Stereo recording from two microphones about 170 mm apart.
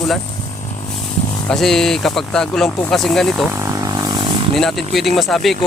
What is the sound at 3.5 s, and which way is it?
Wild animals, 15° right (ahead or behind).